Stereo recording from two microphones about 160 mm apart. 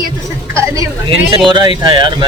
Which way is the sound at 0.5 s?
20° right (ahead or behind).